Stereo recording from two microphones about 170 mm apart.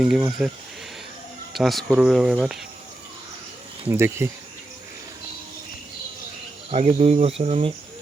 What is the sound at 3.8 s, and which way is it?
Speech, 15° right (ahead or behind).